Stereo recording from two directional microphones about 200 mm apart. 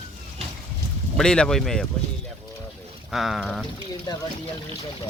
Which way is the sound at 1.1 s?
5° left (ahead or behind).